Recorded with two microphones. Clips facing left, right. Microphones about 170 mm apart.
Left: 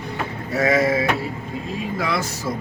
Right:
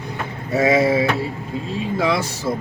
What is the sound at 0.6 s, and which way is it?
Speech, 25° right (ahead or behind).